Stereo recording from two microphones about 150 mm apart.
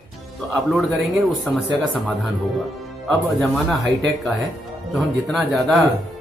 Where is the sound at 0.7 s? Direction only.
Centre (ahead or behind).